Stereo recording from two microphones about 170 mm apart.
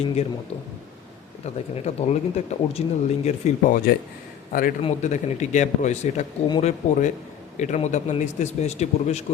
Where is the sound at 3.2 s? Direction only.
55° left (ahead or behind).